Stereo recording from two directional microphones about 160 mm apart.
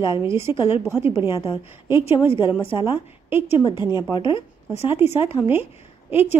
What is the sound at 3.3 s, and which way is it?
Speech, 15° right (ahead or behind).